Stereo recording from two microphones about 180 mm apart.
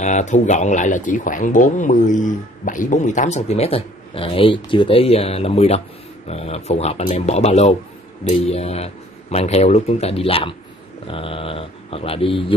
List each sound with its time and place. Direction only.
0.0 s speech: 40° left (ahead or behind)